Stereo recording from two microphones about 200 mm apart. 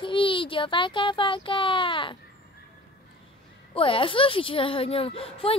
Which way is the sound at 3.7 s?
25° left (ahead or behind).